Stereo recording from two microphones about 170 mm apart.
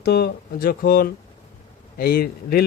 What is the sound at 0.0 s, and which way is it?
A man's voice, 70° left (ahead or behind).